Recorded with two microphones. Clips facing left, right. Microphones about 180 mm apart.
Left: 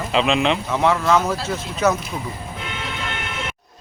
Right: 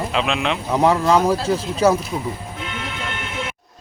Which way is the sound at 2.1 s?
15° right (ahead or behind).